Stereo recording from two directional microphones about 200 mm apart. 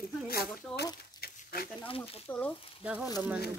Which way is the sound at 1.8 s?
30° left (ahead or behind).